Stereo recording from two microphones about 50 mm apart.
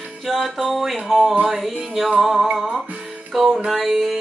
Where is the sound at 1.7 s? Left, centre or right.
Centre.